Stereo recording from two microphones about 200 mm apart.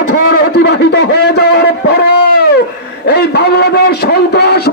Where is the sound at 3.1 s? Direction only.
55° left (ahead or behind).